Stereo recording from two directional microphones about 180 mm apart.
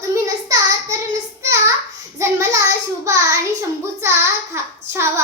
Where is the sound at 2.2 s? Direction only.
15° right (ahead or behind).